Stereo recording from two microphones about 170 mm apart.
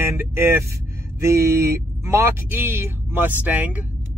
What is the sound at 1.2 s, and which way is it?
Speech, 15° right (ahead or behind).